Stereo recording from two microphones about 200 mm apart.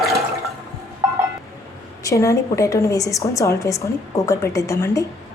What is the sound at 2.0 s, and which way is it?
A woman's voice, 15° left (ahead or behind).